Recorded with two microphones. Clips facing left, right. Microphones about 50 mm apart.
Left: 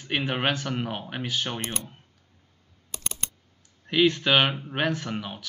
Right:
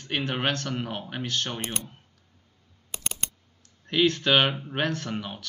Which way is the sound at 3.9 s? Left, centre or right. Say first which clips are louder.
Left 1 dB; centre.